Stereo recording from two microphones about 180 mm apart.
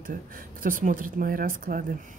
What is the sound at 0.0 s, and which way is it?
Speech, 50° right (ahead or behind).